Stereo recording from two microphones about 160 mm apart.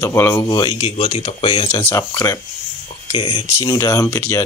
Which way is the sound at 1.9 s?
15° left (ahead or behind).